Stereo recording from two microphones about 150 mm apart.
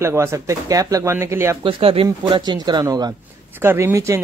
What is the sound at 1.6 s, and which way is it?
Speech, 35° right (ahead or behind).